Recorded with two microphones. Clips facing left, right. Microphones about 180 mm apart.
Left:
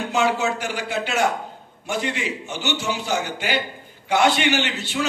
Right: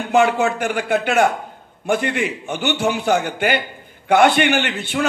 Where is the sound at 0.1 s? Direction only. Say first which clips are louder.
Right 6 dB; 55° right (ahead or behind).